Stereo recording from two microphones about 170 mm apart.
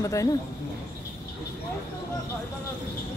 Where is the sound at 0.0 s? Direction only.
20° left (ahead or behind).